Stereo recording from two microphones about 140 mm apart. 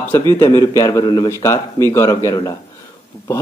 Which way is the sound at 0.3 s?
20° left (ahead or behind).